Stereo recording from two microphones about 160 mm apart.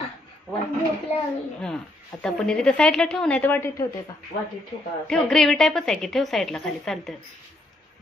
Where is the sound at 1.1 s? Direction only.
40° left (ahead or behind).